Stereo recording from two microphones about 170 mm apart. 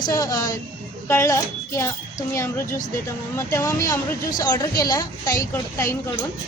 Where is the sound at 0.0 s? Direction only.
20° left (ahead or behind).